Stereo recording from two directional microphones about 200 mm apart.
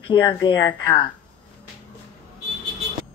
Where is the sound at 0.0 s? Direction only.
25° left (ahead or behind).